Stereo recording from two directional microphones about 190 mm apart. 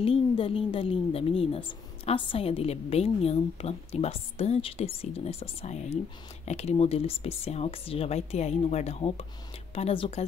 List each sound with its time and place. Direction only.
0.0 s a woman's voice: 30° left (ahead or behind)